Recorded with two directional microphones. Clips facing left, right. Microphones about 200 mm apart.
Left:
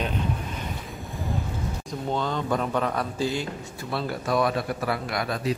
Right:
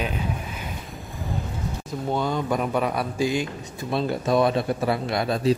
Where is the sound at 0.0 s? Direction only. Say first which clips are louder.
Even; 5° right (ahead or behind).